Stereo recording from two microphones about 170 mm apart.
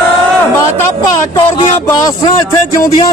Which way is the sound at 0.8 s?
25° left (ahead or behind).